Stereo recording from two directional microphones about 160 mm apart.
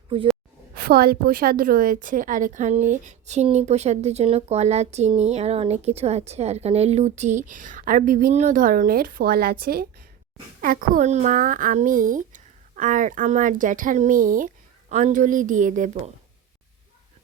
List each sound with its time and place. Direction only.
0.1 s a woman's voice: 35° right (ahead or behind)
0.8 s a woman's voice: 70° right (ahead or behind); by 16.1 s 45° right (ahead or behind)